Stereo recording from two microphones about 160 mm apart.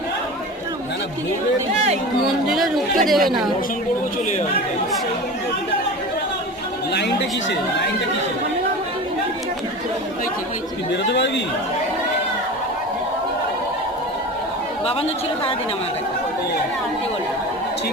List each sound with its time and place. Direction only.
2.2 s speech: centre (ahead or behind)
11.0 s speech: 90° left
14.8 s speech: 40° left (ahead or behind)